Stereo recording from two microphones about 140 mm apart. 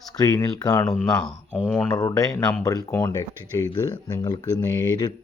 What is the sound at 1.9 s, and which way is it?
Speech, 25° left (ahead or behind).